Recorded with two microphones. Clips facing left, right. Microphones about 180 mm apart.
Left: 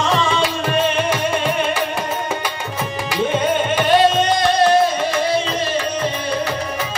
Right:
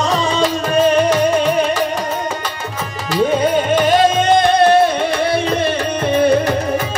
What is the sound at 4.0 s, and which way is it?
Music, 55° right (ahead or behind).